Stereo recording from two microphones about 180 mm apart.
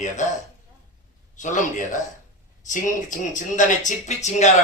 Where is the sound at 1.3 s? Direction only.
45° left (ahead or behind).